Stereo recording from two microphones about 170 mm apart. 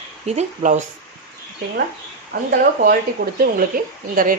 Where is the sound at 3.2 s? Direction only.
70° right (ahead or behind).